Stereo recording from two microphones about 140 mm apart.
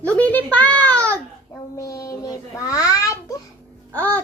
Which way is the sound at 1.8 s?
25° left (ahead or behind).